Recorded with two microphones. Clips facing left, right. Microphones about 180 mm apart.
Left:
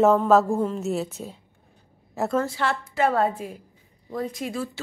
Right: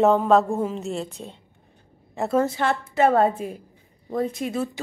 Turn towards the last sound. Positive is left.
turn(degrees=-25)  # may be behind; listen again after turning